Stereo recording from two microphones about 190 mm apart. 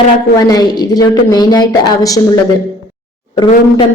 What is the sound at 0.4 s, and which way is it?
A man's voice, 20° left (ahead or behind).